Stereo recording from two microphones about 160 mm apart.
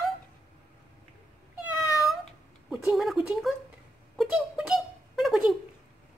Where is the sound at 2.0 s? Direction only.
Centre (ahead or behind).